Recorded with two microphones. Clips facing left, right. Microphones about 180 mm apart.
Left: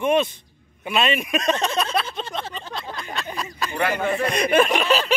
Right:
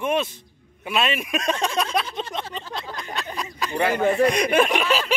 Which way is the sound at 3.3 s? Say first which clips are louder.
Left 1 dB; 15° right (ahead or behind).